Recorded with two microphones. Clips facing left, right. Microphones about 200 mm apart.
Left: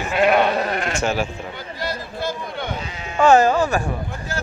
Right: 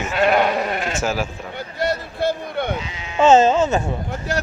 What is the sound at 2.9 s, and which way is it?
Sheep, 45° left (ahead or behind).